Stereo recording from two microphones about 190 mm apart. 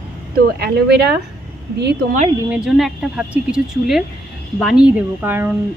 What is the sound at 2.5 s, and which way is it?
A woman's voice, centre (ahead or behind).